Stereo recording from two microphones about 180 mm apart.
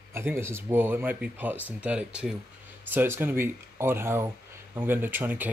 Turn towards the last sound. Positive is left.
turn(degrees=-10)  # may be behind; listen again after turning